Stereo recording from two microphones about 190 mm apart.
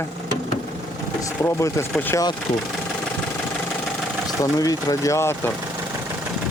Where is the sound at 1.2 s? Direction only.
10° left (ahead or behind).